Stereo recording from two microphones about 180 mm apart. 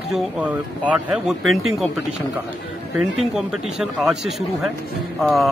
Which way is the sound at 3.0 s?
5° right (ahead or behind).